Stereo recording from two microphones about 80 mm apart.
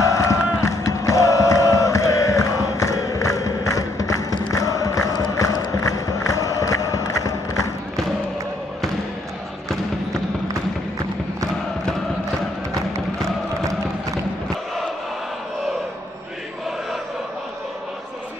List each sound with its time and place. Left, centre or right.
0.0 s crowd: left